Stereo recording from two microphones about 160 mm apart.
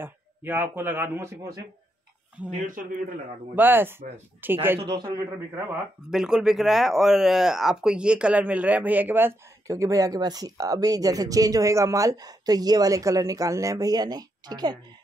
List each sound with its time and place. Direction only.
0.0 s a man's voice: 15° right (ahead or behind)
2.6 s speech: 55° right (ahead or behind)
3.5 s a man's voice: 10° right (ahead or behind)
4.8 s speech: 30° right (ahead or behind)
5.5 s speech: 10° right (ahead or behind); by 14.8 s 25° right (ahead or behind)